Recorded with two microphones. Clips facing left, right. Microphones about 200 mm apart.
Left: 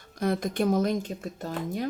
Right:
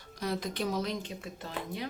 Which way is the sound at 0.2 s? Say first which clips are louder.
Left 7 dB; 50° left (ahead or behind).